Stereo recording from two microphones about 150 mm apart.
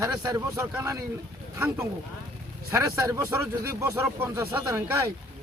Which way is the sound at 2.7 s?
20° right (ahead or behind).